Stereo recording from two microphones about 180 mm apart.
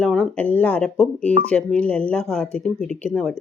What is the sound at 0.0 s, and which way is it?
Speech, 5° left (ahead or behind).